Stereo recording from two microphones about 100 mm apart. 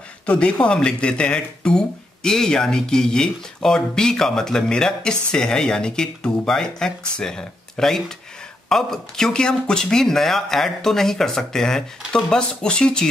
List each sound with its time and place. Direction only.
0.3 s speech: 10° left (ahead or behind)